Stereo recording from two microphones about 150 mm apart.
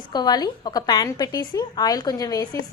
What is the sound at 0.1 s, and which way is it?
A woman's voice, 30° left (ahead or behind).